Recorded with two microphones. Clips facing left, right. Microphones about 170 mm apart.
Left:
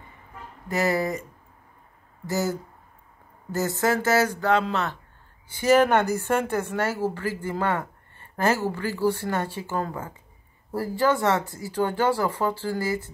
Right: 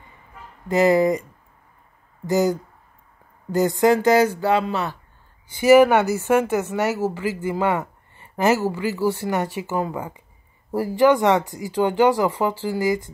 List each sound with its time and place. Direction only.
0.7 s speech: 20° right (ahead or behind)
2.2 s speech: 20° right (ahead or behind)
3.8 s speech: 15° right (ahead or behind)